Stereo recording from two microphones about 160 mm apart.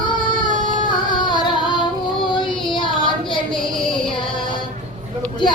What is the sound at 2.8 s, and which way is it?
Child singing, 30° left (ahead or behind).